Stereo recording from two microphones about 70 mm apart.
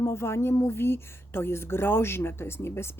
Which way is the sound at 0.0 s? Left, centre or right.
Left.